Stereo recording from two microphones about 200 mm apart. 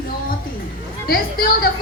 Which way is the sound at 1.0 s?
45° left (ahead or behind).